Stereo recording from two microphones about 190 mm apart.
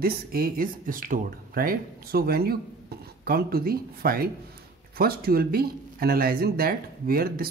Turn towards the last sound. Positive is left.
turn(degrees=-50)  # may be behind; listen again after turning